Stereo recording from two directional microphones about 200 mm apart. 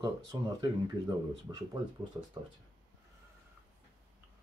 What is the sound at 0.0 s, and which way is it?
Speech, 20° right (ahead or behind).